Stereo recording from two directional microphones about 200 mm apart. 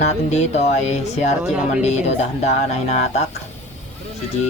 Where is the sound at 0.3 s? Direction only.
35° left (ahead or behind).